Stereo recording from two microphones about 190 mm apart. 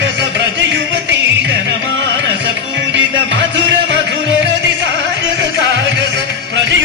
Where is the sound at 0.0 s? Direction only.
70° right (ahead or behind).